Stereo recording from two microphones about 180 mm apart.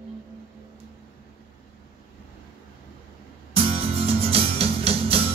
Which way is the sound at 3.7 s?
30° right (ahead or behind).